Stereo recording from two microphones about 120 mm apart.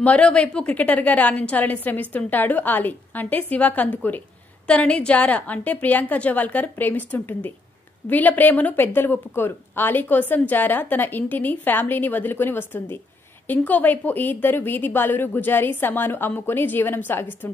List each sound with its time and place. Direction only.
0.0 s a woman's voice: 10° left (ahead or behind)